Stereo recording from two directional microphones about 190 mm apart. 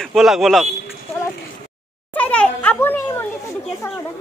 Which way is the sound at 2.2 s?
5° left (ahead or behind).